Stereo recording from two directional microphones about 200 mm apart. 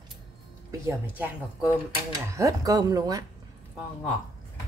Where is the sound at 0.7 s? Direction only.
10° right (ahead or behind).